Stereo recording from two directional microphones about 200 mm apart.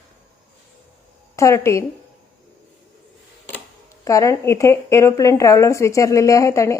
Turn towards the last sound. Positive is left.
turn(degrees=15)  # may be behind; listen again after turning